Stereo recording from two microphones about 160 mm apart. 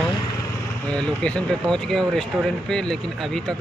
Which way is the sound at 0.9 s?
5° left (ahead or behind).